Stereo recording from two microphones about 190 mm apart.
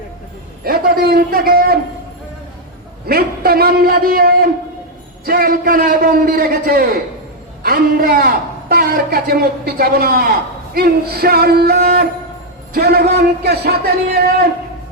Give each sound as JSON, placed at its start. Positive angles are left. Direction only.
{"t": 0.6, "sound": "a man's voice", "side_deg": -55}
{"t": 3.1, "sound": "a man's voice", "side_deg": -55}
{"t": 10.8, "sound": "a sound", "side_deg": -55}
{"t": 12.7, "sound": "speech", "side_deg": -55}